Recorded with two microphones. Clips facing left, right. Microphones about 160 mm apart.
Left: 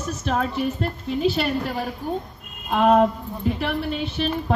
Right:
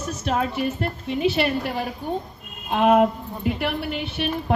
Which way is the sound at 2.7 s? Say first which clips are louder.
Even; 15° right (ahead or behind).